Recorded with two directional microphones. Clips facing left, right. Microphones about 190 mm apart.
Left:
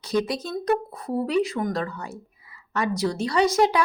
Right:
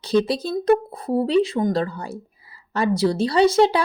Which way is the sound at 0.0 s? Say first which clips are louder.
Right 5 dB; 30° right (ahead or behind).